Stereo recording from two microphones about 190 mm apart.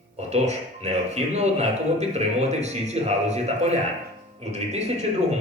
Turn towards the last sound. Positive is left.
turn(degrees=-35)  # may be behind; listen again after turning